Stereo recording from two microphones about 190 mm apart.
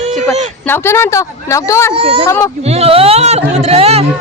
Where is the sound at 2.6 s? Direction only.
35° right (ahead or behind).